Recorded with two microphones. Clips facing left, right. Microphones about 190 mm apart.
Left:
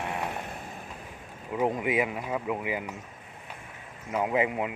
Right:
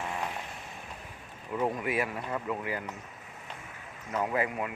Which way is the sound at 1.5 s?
20° left (ahead or behind).